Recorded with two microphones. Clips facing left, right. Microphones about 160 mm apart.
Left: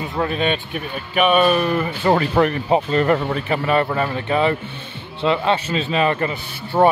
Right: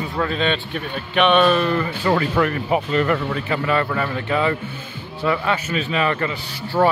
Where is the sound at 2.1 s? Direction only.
30° left (ahead or behind).